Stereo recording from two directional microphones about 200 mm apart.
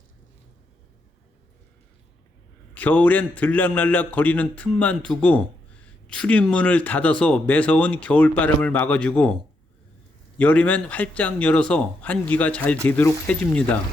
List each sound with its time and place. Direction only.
2.7 s a man's voice: 5° left (ahead or behind)